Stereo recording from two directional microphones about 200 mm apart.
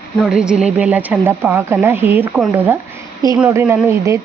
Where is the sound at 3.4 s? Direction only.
10° right (ahead or behind).